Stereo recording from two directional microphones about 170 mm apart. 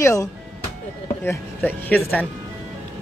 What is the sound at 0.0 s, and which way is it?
Speech, 20° left (ahead or behind).